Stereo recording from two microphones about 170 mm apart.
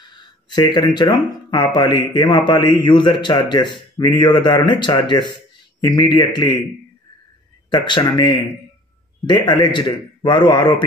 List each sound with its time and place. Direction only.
0.1 s speech: 25° left (ahead or behind)
7.7 s speech: 25° left (ahead or behind)